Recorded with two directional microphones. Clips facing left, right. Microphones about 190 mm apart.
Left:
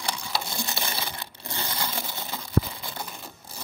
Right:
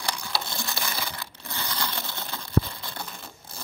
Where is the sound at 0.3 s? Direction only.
20° left (ahead or behind).